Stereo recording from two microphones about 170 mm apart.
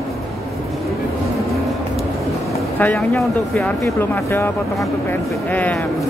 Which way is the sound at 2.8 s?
10° left (ahead or behind).